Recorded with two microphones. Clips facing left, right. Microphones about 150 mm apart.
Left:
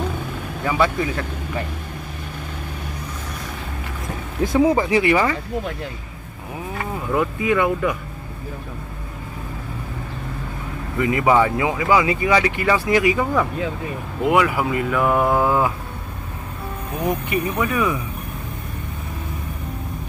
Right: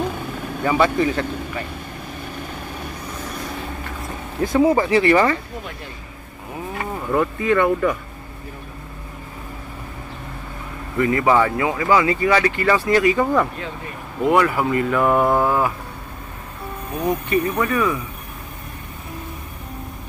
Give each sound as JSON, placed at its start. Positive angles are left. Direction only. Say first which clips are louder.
{"t": 0.7, "sound": "speech", "louder": "right 3 dB", "side_deg": 0}
{"t": 4.6, "sound": "speech", "louder": "right 1 dB", "side_deg": 15}
{"t": 7.0, "sound": "speech", "louder": "right 1 dB", "side_deg": 5}
{"t": 11.0, "sound": "speech", "louder": "even", "side_deg": 15}
{"t": 15.4, "sound": "speech", "louder": "left 1 dB", "side_deg": 15}
{"t": 17.0, "sound": "speech", "louder": "right 2 dB", "side_deg": 10}